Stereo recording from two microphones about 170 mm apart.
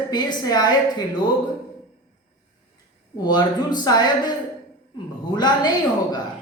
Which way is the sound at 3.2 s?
25° left (ahead or behind).